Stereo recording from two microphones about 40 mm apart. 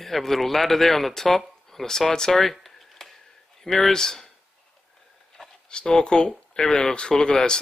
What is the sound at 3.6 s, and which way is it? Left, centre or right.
Speech, centre.